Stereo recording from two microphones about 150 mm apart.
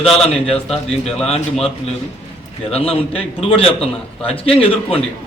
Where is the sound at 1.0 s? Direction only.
45° left (ahead or behind).